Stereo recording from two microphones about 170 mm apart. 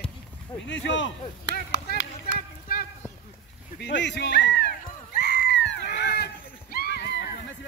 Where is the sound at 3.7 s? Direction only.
90° left.